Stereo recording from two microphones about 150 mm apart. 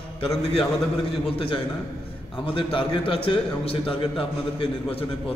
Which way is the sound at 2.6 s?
35° left (ahead or behind).